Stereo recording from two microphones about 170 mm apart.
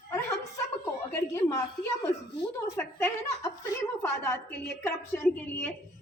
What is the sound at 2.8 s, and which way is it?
A woman's voice, 15° left (ahead or behind).